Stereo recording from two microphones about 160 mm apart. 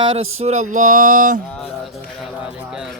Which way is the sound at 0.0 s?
35° right (ahead or behind).